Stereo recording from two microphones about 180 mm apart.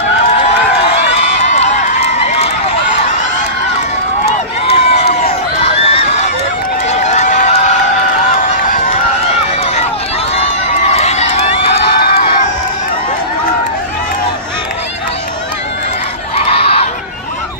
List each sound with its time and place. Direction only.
1.4 s run: 40° left (ahead or behind)
4.3 s run: 35° left (ahead or behind)
5.6 s a sound: 35° left (ahead or behind)
6.9 s run: 40° left (ahead or behind)
10.3 s run: 35° left (ahead or behind)
11.9 s crowd: 60° left (ahead or behind)
16.5 s crowd: 30° left (ahead or behind)